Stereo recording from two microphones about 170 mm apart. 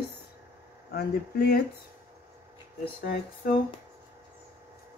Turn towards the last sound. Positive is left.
turn(degrees=65)  # may be behind; listen again after turning